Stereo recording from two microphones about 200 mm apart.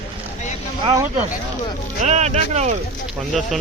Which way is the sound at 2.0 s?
35° right (ahead or behind).